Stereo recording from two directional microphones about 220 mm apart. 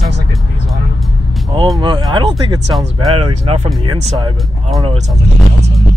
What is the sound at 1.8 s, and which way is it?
Speech, 20° right (ahead or behind).